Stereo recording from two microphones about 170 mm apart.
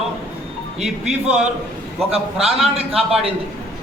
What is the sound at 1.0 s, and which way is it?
Speech, 5° right (ahead or behind).